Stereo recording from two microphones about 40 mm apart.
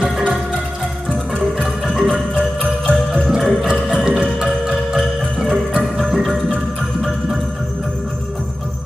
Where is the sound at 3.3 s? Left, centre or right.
Centre.